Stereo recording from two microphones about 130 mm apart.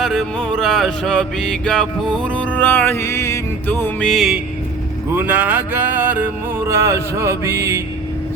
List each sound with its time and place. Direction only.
0.0 s music: centre (ahead or behind); by 3.8 s 25° left (ahead or behind)
3.8 s music: 5° left (ahead or behind)
5.1 s a sound: 10° right (ahead or behind)